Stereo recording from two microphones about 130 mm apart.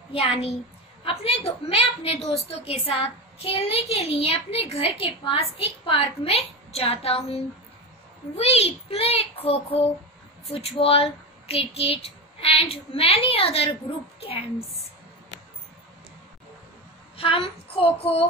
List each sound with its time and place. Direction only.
0.1 s a woman's voice: 50° left (ahead or behind)
17.2 s a woman's voice: 45° left (ahead or behind)